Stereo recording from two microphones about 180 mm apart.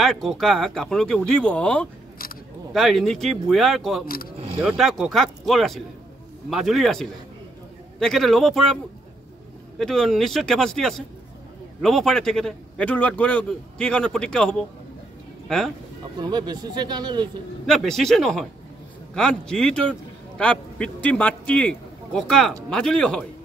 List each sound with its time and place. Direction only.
0.0 s a man's voice: centre (ahead or behind)
9.8 s a man's voice: centre (ahead or behind)
16.2 s speech: 25° right (ahead or behind)
17.6 s a man's voice: 5° left (ahead or behind)